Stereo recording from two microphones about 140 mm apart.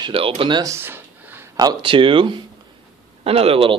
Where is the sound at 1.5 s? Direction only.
30° right (ahead or behind).